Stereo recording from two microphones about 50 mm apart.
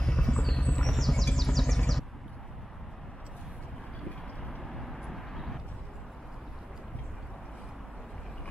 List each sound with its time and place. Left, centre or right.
0.0 s a sound: centre
0.7 s vehicle: centre
4.6 s vehicle: centre